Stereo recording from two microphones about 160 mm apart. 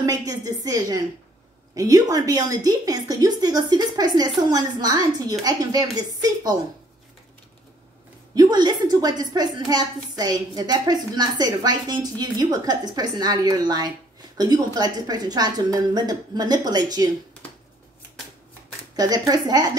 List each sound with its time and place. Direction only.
0.0 s a woman's voice: 20° right (ahead or behind)
8.4 s a woman's voice: 25° right (ahead or behind)
18.9 s a woman's voice: 25° right (ahead or behind)